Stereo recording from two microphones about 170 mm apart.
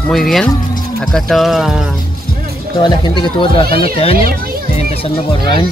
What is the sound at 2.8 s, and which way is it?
Speech, 25° left (ahead or behind).